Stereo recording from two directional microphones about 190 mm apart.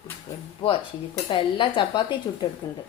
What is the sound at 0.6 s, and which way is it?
Speech, 35° left (ahead or behind).